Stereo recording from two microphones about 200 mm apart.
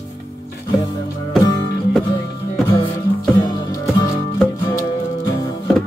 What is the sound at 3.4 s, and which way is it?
Music, 20° left (ahead or behind).